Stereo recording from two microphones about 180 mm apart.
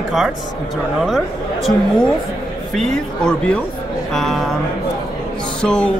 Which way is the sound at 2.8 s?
5° left (ahead or behind).